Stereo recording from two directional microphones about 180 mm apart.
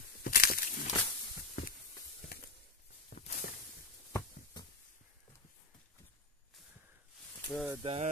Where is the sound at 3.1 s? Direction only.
45° left (ahead or behind).